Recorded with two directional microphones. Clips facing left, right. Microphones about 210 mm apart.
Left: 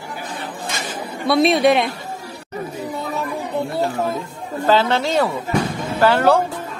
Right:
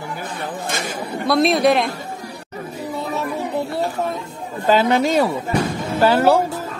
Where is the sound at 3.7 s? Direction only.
Centre (ahead or behind).